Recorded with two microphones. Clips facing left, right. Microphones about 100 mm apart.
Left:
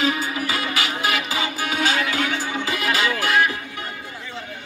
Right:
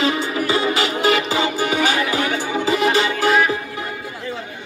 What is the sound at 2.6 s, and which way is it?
Music, 30° right (ahead or behind).